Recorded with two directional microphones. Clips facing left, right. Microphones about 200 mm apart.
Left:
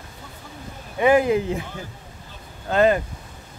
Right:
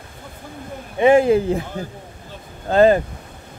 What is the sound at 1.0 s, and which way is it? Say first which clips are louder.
Speech: right 4 dB; 25° right (ahead or behind).